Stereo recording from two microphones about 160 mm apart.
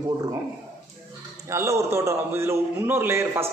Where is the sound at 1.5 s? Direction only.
15° right (ahead or behind).